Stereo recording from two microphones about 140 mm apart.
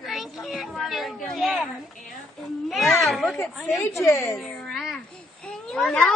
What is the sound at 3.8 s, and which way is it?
Speech, 20° left (ahead or behind).